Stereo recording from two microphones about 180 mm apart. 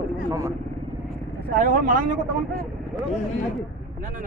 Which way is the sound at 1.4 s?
50° right (ahead or behind).